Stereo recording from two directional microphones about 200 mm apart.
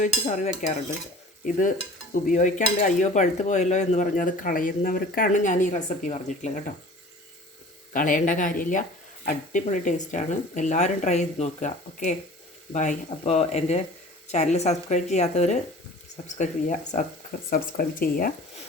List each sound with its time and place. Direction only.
0.0 s dishes: 35° left (ahead or behind)
7.9 s dishes: 45° left (ahead or behind)
17.5 s speech: 45° left (ahead or behind)